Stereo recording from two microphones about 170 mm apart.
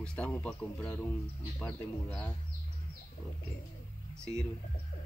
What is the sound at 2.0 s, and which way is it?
Speech, 10° left (ahead or behind).